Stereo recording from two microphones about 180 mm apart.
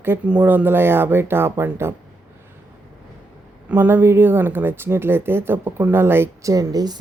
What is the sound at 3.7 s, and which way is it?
Speech, 10° right (ahead or behind).